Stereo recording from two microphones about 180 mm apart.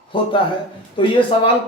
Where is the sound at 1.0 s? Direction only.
30° left (ahead or behind).